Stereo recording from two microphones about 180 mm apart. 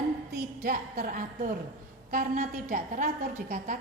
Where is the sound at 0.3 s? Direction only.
60° right (ahead or behind).